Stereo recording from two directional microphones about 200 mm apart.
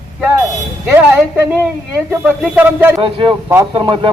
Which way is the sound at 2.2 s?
10° right (ahead or behind).